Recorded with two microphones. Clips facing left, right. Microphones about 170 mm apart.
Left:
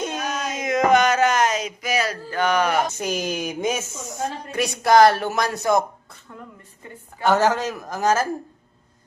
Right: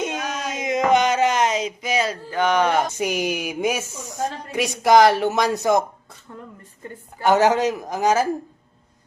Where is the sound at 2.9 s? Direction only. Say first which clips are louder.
Right 2 dB; 15° right (ahead or behind).